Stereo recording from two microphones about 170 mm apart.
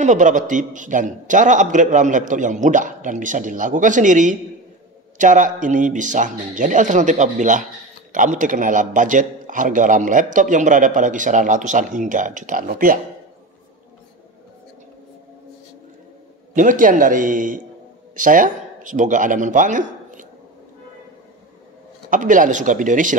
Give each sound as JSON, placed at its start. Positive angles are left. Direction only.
{"t": 0.0, "sound": "a man's voice", "side_deg": -45}
{"t": 16.5, "sound": "a man's voice", "side_deg": -50}
{"t": 22.1, "sound": "a man's voice", "side_deg": -50}